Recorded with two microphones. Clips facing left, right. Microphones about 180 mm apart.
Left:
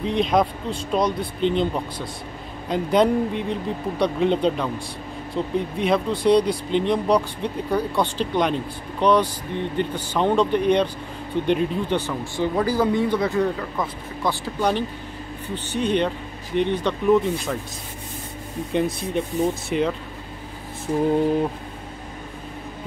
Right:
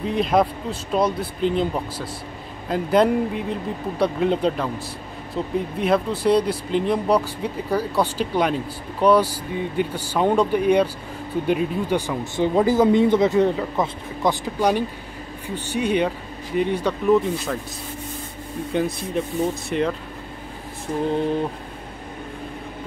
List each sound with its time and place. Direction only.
0.0 s speech: 5° right (ahead or behind)
12.4 s speech: 20° right (ahead or behind); by 17.6 s centre (ahead or behind)
18.7 s speech: centre (ahead or behind)